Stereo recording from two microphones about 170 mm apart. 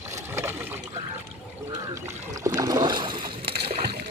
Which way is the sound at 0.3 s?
15° right (ahead or behind).